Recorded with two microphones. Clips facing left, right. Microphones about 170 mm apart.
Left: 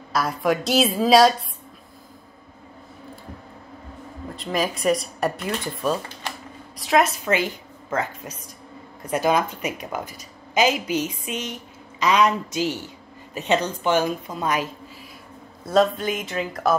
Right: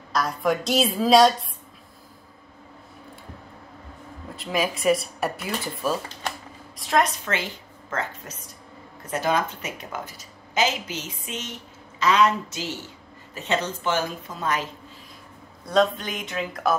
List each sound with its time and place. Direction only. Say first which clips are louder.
0.1 s speech: left 2 dB; 5° left (ahead or behind)
4.4 s a woman's voice: left 1 dB; centre (ahead or behind); by 14.7 s 15° left (ahead or behind)
15.6 s speech: left 2 dB; 5° left (ahead or behind)